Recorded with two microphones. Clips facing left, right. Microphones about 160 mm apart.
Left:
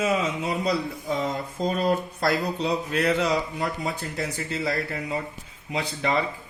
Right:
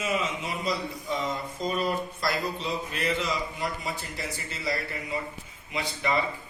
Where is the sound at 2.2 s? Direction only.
70° left (ahead or behind).